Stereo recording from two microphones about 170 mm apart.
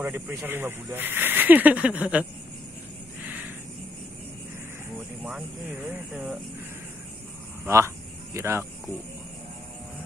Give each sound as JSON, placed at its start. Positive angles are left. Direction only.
{"t": 0.0, "sound": "speech", "side_deg": -10}
{"t": 4.9, "sound": "speech", "side_deg": -5}
{"t": 7.6, "sound": "speech", "side_deg": -15}